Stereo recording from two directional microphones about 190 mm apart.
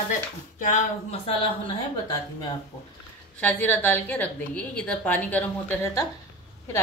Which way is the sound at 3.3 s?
10° left (ahead or behind).